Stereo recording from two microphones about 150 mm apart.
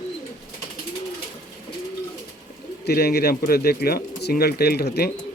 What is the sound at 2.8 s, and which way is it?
Speech, 90° left.